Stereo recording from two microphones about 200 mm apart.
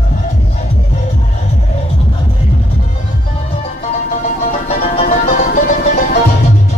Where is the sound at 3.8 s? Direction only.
35° left (ahead or behind).